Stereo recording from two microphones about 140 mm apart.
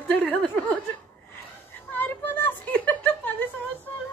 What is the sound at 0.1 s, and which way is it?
Speech, 10° left (ahead or behind).